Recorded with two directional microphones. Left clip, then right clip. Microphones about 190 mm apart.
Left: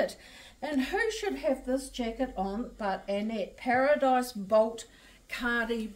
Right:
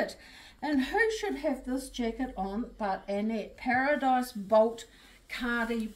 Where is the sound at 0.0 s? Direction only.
20° left (ahead or behind).